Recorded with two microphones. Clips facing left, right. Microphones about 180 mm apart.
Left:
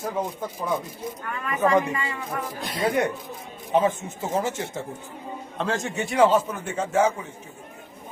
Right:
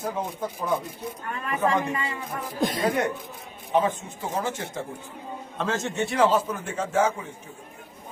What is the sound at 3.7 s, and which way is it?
Speech, 20° left (ahead or behind).